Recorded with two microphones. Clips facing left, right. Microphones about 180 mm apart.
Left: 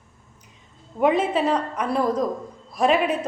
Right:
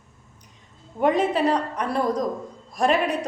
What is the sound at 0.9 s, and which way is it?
A woman's voice, centre (ahead or behind).